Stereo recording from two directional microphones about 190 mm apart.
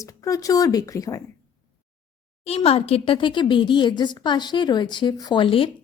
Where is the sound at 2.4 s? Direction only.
30° left (ahead or behind).